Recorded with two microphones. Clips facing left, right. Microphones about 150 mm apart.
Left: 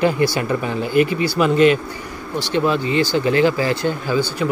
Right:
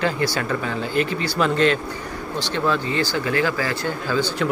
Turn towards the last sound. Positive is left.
turn(degrees=20)  # may be behind; listen again after turning